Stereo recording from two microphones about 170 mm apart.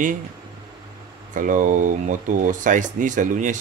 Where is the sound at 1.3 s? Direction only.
50° right (ahead or behind).